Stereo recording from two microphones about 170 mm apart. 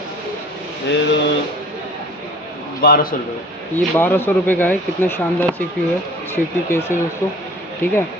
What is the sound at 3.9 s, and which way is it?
Speech, 10° left (ahead or behind).